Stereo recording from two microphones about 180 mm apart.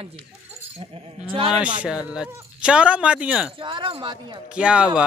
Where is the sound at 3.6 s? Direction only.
25° right (ahead or behind).